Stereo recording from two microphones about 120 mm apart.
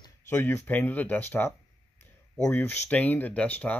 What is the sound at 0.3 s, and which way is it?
Speech, 15° left (ahead or behind).